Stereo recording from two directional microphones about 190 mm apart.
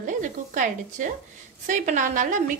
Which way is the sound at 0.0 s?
40° right (ahead or behind).